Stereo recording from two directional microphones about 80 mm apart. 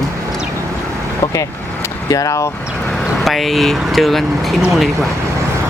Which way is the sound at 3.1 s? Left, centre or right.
Centre.